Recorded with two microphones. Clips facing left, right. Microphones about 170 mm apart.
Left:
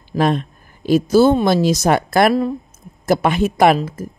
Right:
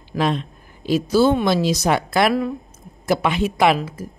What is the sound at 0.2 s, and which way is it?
Speech, 50° left (ahead or behind).